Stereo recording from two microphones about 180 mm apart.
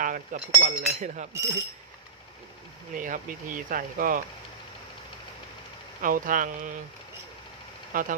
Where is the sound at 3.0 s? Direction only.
45° right (ahead or behind).